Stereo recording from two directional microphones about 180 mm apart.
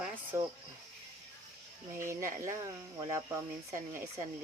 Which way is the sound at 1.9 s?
15° right (ahead or behind).